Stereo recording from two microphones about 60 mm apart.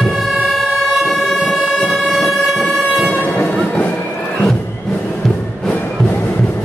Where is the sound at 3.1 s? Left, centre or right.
Left.